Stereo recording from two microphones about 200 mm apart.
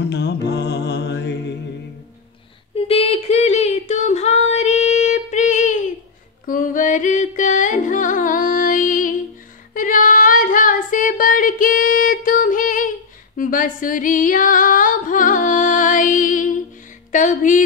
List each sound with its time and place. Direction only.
0.1 s mantra: 60° left (ahead or behind)
2.7 s a sound: 30° left (ahead or behind)
6.4 s music: 40° left (ahead or behind)
9.8 s female singing: 40° left (ahead or behind)
13.4 s music: 40° left (ahead or behind)
17.1 s a sound: 40° left (ahead or behind)